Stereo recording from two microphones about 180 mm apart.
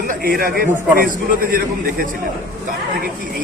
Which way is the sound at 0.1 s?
55° right (ahead or behind).